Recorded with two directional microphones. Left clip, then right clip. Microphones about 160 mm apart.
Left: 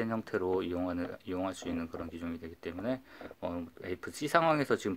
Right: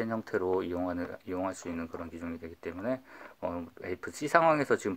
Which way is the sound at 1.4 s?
45° left (ahead or behind).